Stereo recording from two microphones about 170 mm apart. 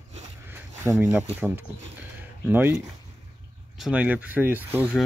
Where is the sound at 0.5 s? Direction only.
15° right (ahead or behind).